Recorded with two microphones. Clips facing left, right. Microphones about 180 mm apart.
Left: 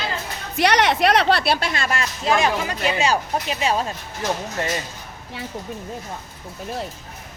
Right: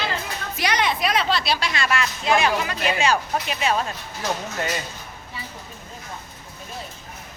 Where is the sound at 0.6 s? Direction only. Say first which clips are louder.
Left 6 dB; 70° left (ahead or behind); by 4.2 s 30° left (ahead or behind).